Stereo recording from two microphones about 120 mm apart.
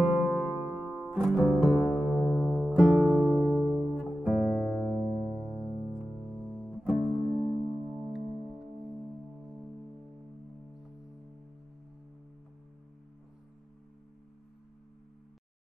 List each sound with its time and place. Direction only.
0.0 s music: centre (ahead or behind)